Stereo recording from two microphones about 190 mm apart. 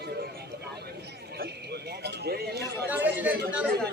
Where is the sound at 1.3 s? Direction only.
55° right (ahead or behind).